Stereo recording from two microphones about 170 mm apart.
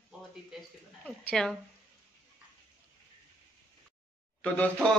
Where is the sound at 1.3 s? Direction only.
5° left (ahead or behind).